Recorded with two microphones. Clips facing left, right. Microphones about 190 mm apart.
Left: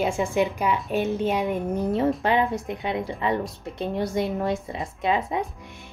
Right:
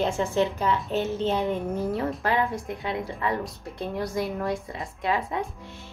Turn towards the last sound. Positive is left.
turn(degrees=20)  # may be behind; listen again after turning